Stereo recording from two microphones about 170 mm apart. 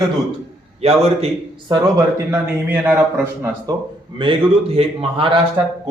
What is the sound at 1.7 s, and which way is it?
Speech, 15° right (ahead or behind).